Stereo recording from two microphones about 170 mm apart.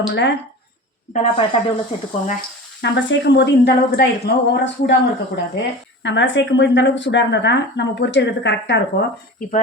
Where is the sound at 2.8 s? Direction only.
90° left.